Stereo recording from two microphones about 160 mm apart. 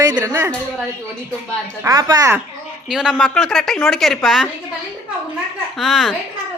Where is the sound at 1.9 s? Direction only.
25° right (ahead or behind).